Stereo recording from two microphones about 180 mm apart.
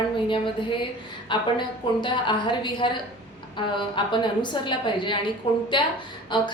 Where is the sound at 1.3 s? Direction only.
25° left (ahead or behind).